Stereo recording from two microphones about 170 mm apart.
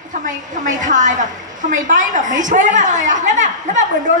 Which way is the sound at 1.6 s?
50° right (ahead or behind).